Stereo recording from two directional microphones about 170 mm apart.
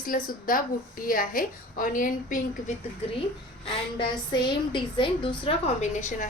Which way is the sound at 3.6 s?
25° left (ahead or behind).